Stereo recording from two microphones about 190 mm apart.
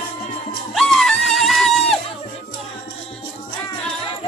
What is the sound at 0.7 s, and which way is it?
Music, centre (ahead or behind).